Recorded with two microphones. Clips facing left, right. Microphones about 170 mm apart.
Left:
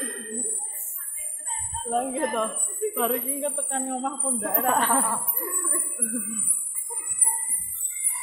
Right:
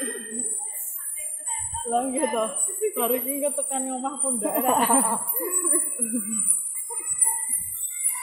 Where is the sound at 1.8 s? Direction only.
Centre (ahead or behind); by 6.2 s 20° right (ahead or behind).